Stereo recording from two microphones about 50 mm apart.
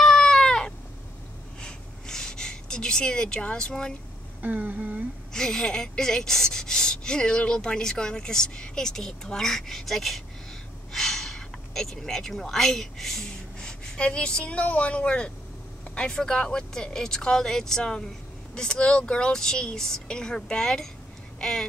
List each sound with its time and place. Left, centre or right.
0.0 s cat: centre
1.6 s a sound: centre
3.5 s speech: centre
4.4 s humming: right
5.3 s speech: centre
10.9 s a sound: centre
14.4 s a woman's voice: left; by 21.6 s centre